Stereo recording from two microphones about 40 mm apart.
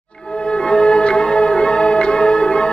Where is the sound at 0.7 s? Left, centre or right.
Left.